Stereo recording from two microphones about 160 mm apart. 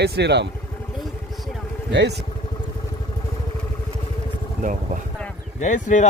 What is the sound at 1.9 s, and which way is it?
Speech, 90° right.